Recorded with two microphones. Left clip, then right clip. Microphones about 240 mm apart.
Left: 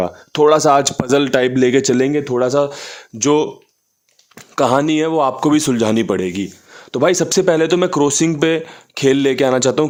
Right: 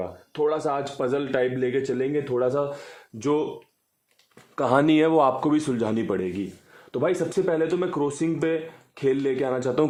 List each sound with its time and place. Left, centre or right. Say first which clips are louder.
0.0 s speech: left 12 dB; left
4.5 s speech: left 8 dB; left
4.8 s a man's voice: left 3 dB; centre
5.4 s speech: left 9 dB; left